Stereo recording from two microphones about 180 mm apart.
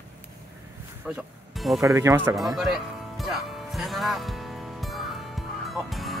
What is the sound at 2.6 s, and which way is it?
Music, centre (ahead or behind).